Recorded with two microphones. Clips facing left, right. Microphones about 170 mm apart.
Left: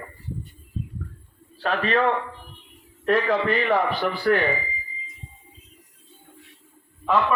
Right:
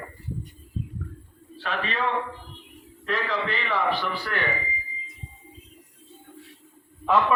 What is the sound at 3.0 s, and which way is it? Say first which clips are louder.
A man's voice: left 7 dB; 50° left (ahead or behind).